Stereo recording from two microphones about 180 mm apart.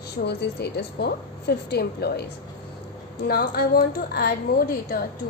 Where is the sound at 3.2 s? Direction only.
60° left (ahead or behind).